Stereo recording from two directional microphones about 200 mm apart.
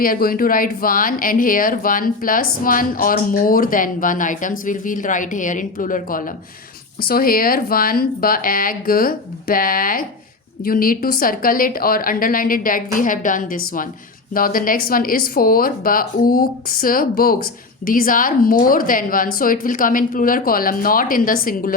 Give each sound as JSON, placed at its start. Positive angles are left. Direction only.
{"t": 0.0, "sound": "speech", "side_deg": 45}